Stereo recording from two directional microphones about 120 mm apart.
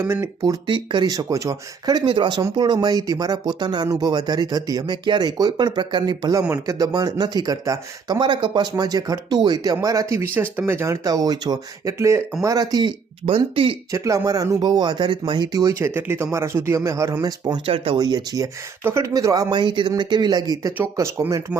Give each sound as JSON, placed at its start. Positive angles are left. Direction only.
{"t": 0.0, "sound": "speech", "side_deg": -20}
{"t": 0.4, "sound": "speech", "side_deg": -40}
{"t": 11.9, "sound": "speech", "side_deg": -25}
{"t": 13.2, "sound": "speech", "side_deg": -45}
{"t": 13.9, "sound": "speech", "side_deg": -25}
{"t": 16.0, "sound": "speech", "side_deg": -20}
{"t": 17.7, "sound": "speech", "side_deg": -50}
{"t": 17.9, "sound": "speech", "side_deg": -30}
{"t": 18.8, "sound": "speech", "side_deg": -20}
{"t": 20.7, "sound": "speech", "side_deg": -20}